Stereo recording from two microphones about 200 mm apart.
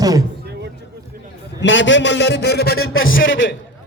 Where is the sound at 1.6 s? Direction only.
65° left (ahead or behind).